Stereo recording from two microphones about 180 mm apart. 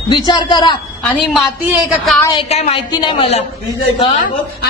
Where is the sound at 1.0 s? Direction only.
Centre (ahead or behind).